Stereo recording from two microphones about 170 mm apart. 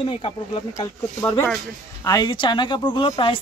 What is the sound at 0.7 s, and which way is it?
Speech, 15° left (ahead or behind).